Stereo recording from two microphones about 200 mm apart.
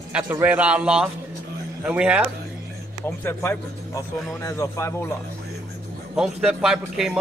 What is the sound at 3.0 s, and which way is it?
A man's voice, 10° left (ahead or behind).